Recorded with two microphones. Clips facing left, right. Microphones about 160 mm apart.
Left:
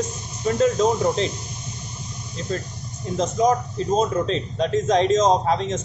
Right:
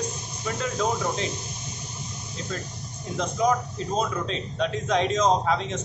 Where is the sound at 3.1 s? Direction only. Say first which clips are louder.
Left 4 dB; 40° left (ahead or behind).